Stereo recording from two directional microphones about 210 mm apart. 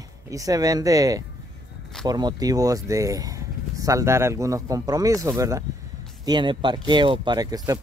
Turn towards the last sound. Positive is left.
turn(degrees=-20)  # may be behind; listen again after turning